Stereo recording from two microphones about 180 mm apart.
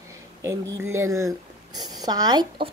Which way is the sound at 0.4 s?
15° right (ahead or behind).